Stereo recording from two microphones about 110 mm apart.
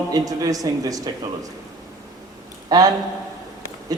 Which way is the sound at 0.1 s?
35° right (ahead or behind).